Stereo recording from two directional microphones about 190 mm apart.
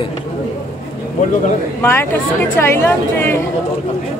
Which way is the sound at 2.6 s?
10° left (ahead or behind).